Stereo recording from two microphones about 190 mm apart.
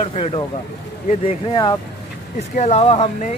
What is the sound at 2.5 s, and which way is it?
Speech, 35° left (ahead or behind).